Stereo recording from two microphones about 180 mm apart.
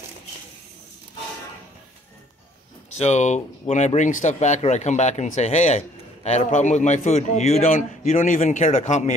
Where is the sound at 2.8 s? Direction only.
40° left (ahead or behind).